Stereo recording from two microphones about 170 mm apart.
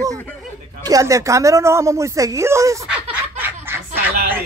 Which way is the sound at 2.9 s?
10° right (ahead or behind).